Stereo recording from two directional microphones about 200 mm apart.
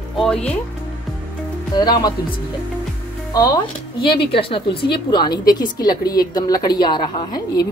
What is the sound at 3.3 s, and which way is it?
A woman's voice, 20° left (ahead or behind).